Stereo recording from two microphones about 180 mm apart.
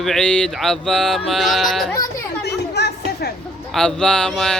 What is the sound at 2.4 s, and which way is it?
Chatter, 65° left (ahead or behind).